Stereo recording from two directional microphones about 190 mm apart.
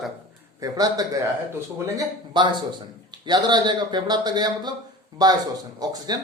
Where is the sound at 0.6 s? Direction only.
20° right (ahead or behind).